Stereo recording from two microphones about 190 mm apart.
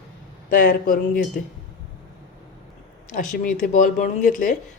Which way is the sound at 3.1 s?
45° left (ahead or behind).